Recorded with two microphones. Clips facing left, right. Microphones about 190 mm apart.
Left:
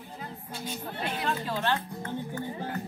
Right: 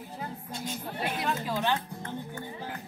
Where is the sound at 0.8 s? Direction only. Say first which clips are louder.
Even; 5° right (ahead or behind).